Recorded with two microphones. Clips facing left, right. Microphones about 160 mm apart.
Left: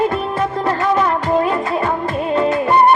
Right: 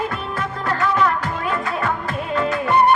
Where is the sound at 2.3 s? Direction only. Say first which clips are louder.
Left 4 dB; 30° left (ahead or behind).